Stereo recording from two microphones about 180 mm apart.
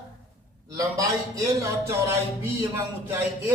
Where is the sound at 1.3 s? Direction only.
15° right (ahead or behind).